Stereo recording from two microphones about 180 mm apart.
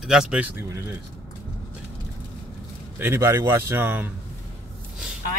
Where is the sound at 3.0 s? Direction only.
10° right (ahead or behind).